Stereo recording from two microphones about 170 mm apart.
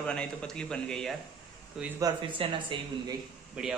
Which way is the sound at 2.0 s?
30° right (ahead or behind).